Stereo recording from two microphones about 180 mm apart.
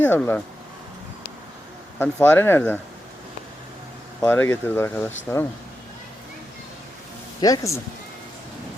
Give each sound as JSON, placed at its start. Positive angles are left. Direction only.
{"t": 0.0, "sound": "speech", "side_deg": 10}
{"t": 2.0, "sound": "speech", "side_deg": 10}
{"t": 4.2, "sound": "speech", "side_deg": 10}
{"t": 7.4, "sound": "speech", "side_deg": 20}